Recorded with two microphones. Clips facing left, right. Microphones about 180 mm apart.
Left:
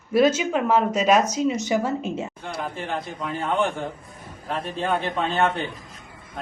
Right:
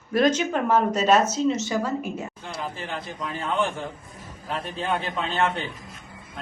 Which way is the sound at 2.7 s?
60° left (ahead or behind).